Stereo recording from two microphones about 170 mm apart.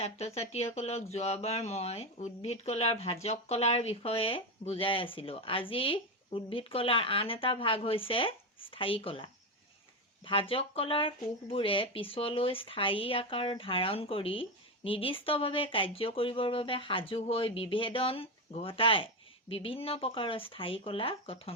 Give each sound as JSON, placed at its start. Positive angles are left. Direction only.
{"t": 0.3, "sound": "speech", "side_deg": 40}
{"t": 10.5, "sound": "speech", "side_deg": 30}